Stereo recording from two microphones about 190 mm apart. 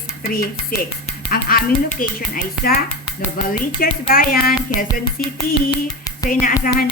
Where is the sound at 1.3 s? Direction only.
50° left (ahead or behind).